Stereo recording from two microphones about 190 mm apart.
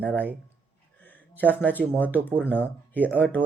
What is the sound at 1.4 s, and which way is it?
Speech, 10° left (ahead or behind).